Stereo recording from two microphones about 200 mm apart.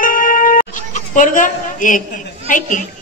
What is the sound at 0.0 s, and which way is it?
Music, 45° left (ahead or behind).